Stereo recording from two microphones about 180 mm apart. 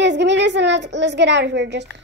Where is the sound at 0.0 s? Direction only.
75° right (ahead or behind).